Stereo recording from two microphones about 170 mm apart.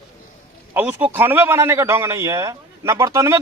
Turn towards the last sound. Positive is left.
turn(degrees=-20)  # may be behind; listen again after turning